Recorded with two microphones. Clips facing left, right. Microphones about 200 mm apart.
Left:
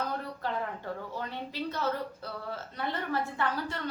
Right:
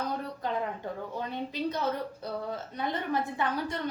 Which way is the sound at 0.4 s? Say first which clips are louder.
Right 2 dB; 15° right (ahead or behind).